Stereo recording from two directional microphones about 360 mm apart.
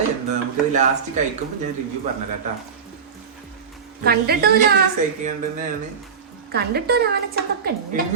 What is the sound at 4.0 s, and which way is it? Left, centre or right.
Speech, right.